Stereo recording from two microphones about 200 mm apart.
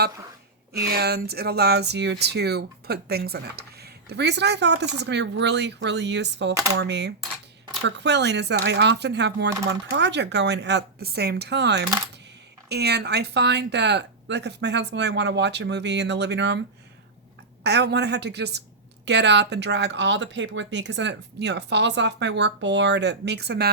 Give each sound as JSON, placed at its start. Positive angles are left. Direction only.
{"t": 0.7, "sound": "speech", "side_deg": -50}
{"t": 17.6, "sound": "speech", "side_deg": -55}